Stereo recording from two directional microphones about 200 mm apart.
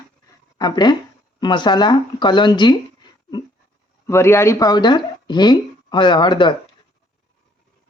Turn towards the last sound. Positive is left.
turn(degrees=20)  # may be behind; listen again after turning